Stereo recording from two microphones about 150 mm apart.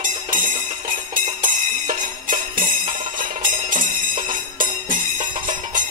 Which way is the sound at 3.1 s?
65° right (ahead or behind).